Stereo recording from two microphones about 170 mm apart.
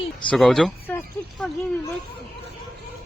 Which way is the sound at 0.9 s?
10° left (ahead or behind).